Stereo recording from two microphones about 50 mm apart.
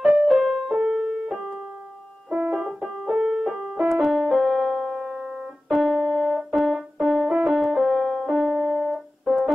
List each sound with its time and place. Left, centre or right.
0.0 s keyboard: centre
0.7 s keyboard: centre
2.2 s music: centre
2.8 s music: centre
3.9 s keyboard: centre
7.5 s music: centre